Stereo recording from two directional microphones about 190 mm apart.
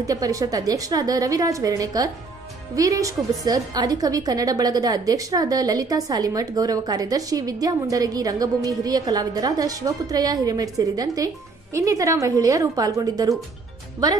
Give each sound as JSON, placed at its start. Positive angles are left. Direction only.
{"t": 0.0, "sound": "a woman's voice", "side_deg": -20}